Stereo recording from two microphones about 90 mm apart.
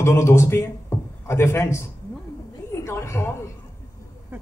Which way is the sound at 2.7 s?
30° left (ahead or behind).